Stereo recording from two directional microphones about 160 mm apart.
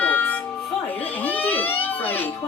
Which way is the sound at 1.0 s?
10° left (ahead or behind).